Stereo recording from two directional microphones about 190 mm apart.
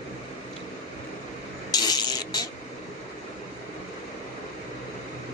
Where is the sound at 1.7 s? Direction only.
20° left (ahead or behind).